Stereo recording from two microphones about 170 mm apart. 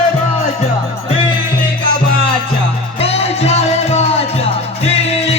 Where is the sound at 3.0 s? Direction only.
35° left (ahead or behind).